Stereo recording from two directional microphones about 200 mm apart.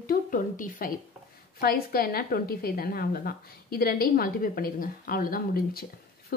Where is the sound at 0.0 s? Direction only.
45° left (ahead or behind).